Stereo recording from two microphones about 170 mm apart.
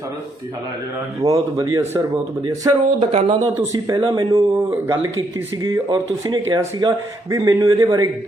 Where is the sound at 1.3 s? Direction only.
20° right (ahead or behind).